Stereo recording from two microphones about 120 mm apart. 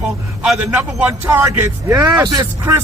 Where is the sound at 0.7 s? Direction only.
15° right (ahead or behind); by 2.5 s 35° right (ahead or behind).